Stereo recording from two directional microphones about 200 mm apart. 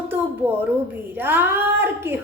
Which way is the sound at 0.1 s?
10° right (ahead or behind).